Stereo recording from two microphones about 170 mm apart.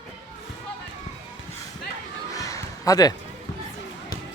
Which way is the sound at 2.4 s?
20° left (ahead or behind).